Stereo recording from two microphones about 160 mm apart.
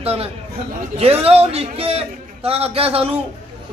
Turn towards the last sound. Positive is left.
turn(degrees=-35)  # may be behind; listen again after turning